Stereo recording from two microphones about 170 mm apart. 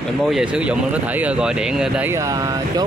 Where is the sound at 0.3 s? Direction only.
5° right (ahead or behind).